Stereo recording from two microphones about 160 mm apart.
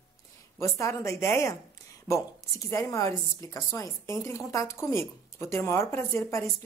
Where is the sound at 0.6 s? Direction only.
20° left (ahead or behind).